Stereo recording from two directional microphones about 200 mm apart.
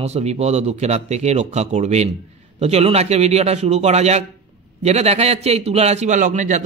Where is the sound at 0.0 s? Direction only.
30° right (ahead or behind).